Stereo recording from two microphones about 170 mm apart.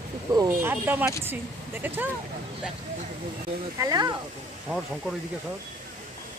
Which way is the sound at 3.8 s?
20° right (ahead or behind).